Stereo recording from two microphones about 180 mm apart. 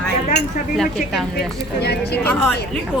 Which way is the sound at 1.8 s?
65° left (ahead or behind).